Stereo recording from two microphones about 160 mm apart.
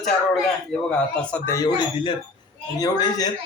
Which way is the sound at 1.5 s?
25° left (ahead or behind).